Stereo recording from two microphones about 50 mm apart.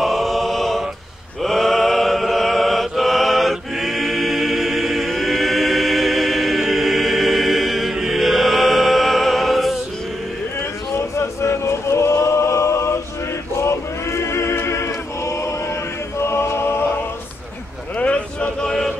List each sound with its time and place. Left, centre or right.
0.0 s a sound: centre
1.4 s chant: centre
7.9 s music: centre
11.1 s chant: left
13.6 s choir: left
17.9 s a sound: left